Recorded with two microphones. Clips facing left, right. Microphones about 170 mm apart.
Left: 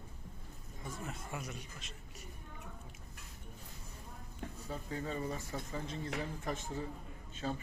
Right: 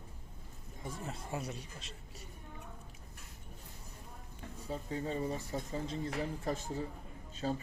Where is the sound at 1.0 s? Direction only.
30° right (ahead or behind).